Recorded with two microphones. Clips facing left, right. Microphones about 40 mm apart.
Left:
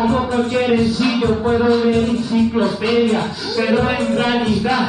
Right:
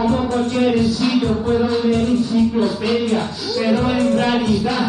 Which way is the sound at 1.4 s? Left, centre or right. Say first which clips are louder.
Left 3 dB; left.